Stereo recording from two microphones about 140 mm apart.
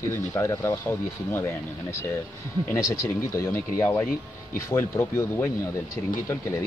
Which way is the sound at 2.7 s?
20° left (ahead or behind).